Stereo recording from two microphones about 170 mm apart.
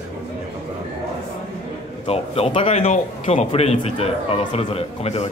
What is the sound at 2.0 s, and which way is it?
Speech, 35° left (ahead or behind).